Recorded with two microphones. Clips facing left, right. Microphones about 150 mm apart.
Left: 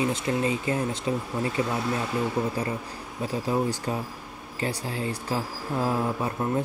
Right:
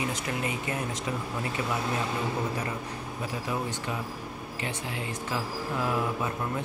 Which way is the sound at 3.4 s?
35° left (ahead or behind).